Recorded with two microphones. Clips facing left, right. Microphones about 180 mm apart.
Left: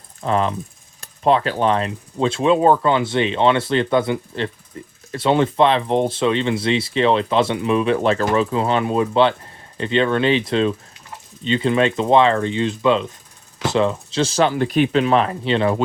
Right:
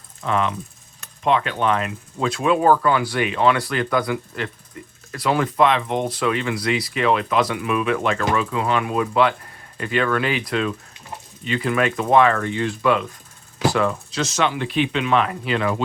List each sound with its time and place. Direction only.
0.2 s speech: 35° left (ahead or behind)